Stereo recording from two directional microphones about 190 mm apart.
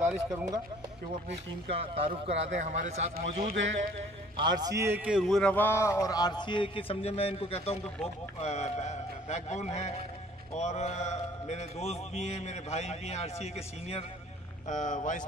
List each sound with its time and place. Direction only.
0.0 s speech: 10° right (ahead or behind)
2.0 s a man's voice: 30° right (ahead or behind)
3.2 s a man's voice: 50° right (ahead or behind)
3.5 s speech: 80° right
4.4 s a man's voice: 20° right (ahead or behind); by 15.2 s 40° left (ahead or behind)